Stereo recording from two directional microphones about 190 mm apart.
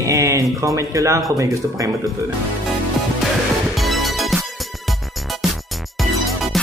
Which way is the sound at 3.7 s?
Centre (ahead or behind).